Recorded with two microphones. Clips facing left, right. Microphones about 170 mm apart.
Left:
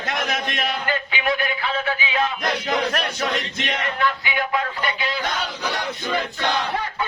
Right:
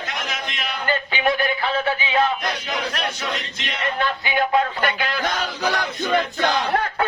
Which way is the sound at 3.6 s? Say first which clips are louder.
Left 5 dB; 50° left (ahead or behind).